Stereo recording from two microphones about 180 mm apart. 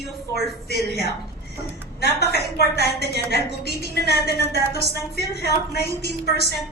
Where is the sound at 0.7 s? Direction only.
60° left (ahead or behind).